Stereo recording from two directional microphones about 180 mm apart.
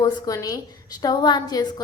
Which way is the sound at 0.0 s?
20° left (ahead or behind).